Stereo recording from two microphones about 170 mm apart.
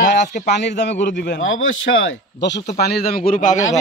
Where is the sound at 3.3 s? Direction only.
50° left (ahead or behind).